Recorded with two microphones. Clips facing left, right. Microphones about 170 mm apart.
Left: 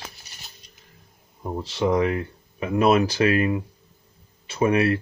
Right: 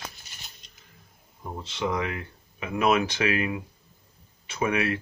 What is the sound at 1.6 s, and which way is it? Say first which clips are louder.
Speech: left 7 dB; 35° left (ahead or behind).